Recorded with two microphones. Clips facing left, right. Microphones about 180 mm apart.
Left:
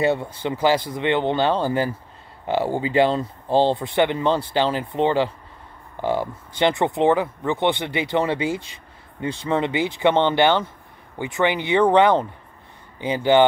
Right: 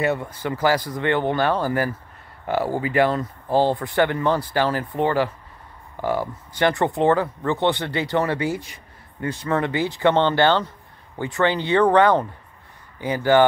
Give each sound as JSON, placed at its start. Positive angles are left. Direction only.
{"t": 0.0, "sound": "speech", "side_deg": 25}